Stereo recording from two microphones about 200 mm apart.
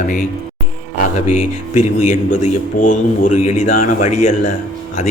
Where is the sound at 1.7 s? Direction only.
35° left (ahead or behind).